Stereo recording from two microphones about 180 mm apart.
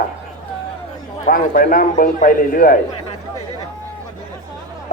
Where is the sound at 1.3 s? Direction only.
50° left (ahead or behind).